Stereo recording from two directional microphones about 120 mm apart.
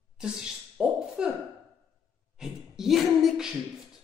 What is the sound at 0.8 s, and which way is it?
Speech, 5° right (ahead or behind).